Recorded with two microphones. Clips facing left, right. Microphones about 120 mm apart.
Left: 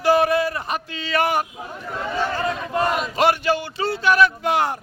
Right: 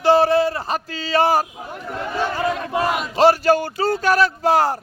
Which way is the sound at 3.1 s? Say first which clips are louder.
Right 7 dB; 30° right (ahead or behind).